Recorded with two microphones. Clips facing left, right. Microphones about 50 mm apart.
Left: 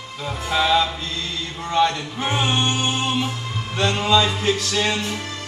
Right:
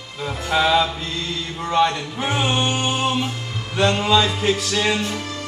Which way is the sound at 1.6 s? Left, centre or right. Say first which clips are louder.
Right 1 dB; centre.